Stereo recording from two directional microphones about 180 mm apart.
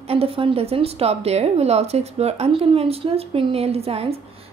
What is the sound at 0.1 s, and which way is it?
Speech, 35° right (ahead or behind).